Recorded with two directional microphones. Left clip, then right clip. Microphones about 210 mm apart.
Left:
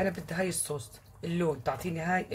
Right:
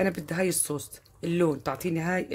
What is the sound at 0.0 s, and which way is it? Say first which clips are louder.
Speech: right 4 dB; 50° right (ahead or behind).